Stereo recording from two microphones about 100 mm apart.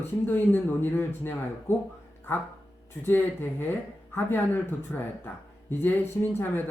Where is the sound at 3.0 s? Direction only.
20° left (ahead or behind).